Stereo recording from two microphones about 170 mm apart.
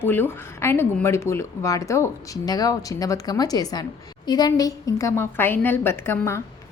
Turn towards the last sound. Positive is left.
turn(degrees=15)  # may be behind; listen again after turning